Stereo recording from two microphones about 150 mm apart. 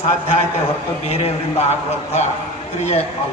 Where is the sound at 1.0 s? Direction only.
45° left (ahead or behind).